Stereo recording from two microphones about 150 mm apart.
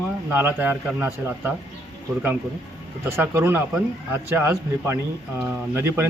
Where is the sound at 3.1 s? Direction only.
15° right (ahead or behind).